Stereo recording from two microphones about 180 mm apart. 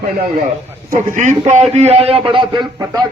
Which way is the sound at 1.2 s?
40° right (ahead or behind).